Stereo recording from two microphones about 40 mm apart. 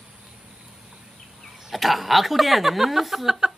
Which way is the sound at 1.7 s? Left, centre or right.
Centre.